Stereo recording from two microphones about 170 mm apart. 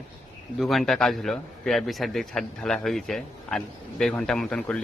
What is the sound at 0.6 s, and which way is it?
A man's voice, centre (ahead or behind).